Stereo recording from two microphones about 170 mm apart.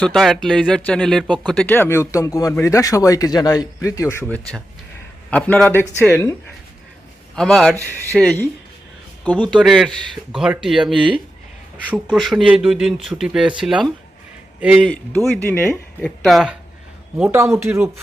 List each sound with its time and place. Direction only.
0.0 s speech: centre (ahead or behind)
7.3 s speech: centre (ahead or behind)
17.2 s speech: 15° right (ahead or behind)